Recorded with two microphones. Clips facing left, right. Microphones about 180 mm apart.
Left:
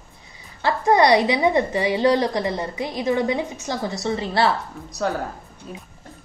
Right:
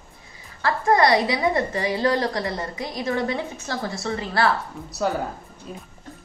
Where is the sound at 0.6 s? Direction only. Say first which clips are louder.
Left 2 dB; 20° left (ahead or behind).